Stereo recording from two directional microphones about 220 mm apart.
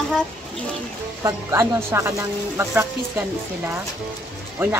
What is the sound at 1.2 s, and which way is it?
A woman's voice, 10° right (ahead or behind).